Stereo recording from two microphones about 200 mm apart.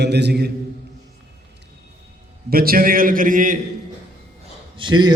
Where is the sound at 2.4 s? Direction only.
45° right (ahead or behind).